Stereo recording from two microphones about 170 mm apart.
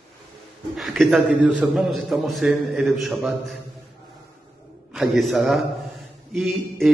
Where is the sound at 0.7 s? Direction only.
Centre (ahead or behind).